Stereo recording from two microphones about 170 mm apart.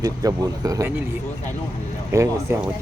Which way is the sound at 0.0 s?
20° right (ahead or behind).